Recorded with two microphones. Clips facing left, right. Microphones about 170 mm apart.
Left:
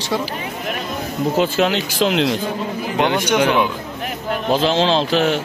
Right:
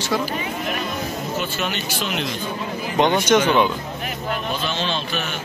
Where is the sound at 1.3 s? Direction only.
90° left.